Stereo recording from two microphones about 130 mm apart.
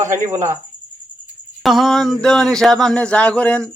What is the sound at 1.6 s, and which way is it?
A man's voice, centre (ahead or behind).